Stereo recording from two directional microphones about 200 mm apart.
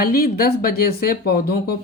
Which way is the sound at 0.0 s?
50° left (ahead or behind).